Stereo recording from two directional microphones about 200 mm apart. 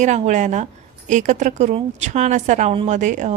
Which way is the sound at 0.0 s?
35° right (ahead or behind).